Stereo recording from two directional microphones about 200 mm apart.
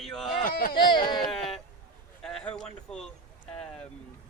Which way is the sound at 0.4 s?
50° left (ahead or behind).